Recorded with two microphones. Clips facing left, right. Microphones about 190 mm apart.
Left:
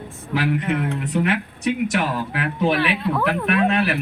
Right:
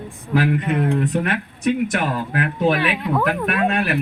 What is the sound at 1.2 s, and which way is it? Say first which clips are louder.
Speech: right 1 dB; 50° right (ahead or behind).